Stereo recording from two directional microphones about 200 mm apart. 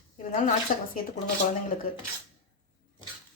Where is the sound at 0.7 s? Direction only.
45° left (ahead or behind).